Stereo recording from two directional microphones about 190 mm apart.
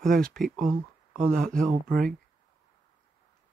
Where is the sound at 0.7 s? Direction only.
45° right (ahead or behind).